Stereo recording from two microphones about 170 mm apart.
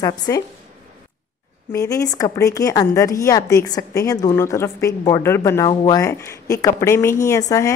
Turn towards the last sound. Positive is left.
turn(degrees=20)  # may be behind; listen again after turning